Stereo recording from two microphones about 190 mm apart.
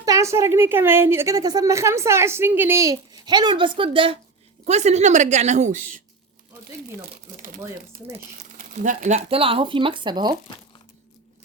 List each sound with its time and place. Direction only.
0.0 s a woman's voice: 15° right (ahead or behind); by 5.8 s 40° right (ahead or behind)
8.5 s speech: 40° right (ahead or behind); by 10.3 s 25° right (ahead or behind)